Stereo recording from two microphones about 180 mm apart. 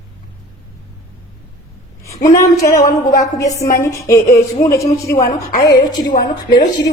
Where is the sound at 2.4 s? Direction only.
20° left (ahead or behind).